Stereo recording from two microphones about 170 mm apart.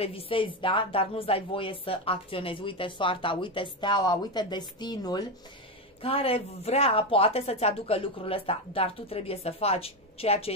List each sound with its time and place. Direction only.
0.0 s speech: 35° left (ahead or behind)